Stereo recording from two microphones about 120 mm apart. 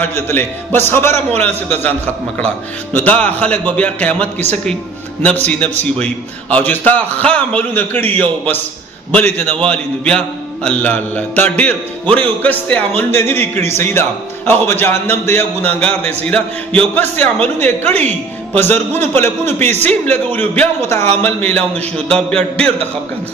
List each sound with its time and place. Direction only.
0.0 s mantra: 15° left (ahead or behind)
5.9 s mantra: 10° left (ahead or behind)